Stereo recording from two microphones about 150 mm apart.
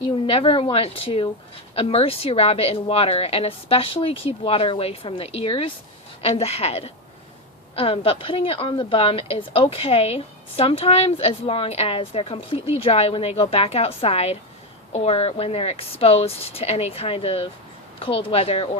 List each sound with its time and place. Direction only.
0.0 s a woman's voice: 40° left (ahead or behind)